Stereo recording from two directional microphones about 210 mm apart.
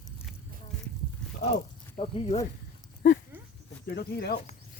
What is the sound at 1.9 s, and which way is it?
Speech, 30° left (ahead or behind).